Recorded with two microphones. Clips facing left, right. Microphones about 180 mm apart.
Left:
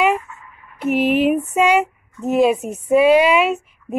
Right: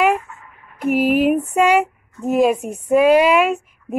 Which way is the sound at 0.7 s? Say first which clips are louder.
Right 1 dB; 50° right (ahead or behind).